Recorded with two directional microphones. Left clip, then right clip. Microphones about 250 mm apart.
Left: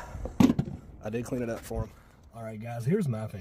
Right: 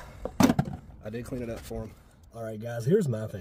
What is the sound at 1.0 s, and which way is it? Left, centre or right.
Speech, centre.